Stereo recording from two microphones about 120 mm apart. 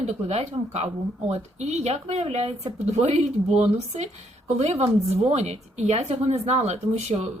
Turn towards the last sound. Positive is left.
turn(degrees=-65)  # may be behind; listen again after turning